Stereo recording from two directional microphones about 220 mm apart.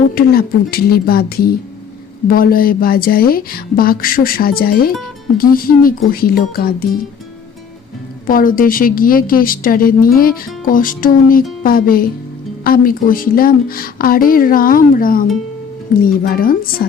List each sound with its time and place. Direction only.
0.1 s a woman's voice: 40° left (ahead or behind)
8.3 s a woman's voice: 40° left (ahead or behind)